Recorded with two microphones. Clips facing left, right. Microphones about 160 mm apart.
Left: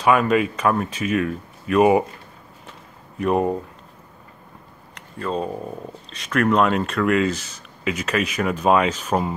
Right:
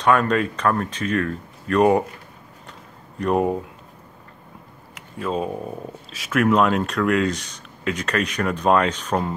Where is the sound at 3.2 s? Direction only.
Centre (ahead or behind).